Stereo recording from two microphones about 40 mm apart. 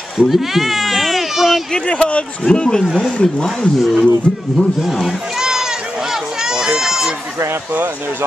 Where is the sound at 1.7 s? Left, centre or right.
Left.